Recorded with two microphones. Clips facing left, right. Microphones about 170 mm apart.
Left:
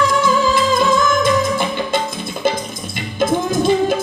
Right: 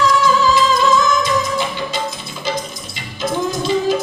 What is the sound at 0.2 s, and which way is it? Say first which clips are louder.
Music: right 1 dB; 50° left (ahead or behind).